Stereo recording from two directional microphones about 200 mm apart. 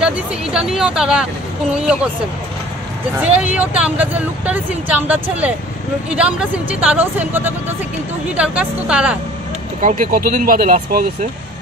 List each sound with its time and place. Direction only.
0.0 s speech: 5° right (ahead or behind)
3.5 s speech: 5° right (ahead or behind)
9.8 s speech: 40° right (ahead or behind)